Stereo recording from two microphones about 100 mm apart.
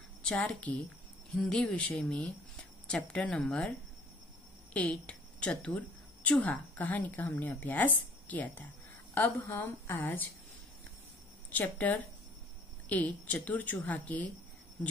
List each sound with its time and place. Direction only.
0.2 s a woman's voice: 10° left (ahead or behind)
4.7 s a woman's voice: 10° left (ahead or behind)
11.5 s a woman's voice: 15° left (ahead or behind)